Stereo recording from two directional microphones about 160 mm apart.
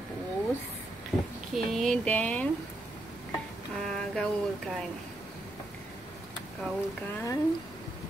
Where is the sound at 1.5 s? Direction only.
Centre (ahead or behind).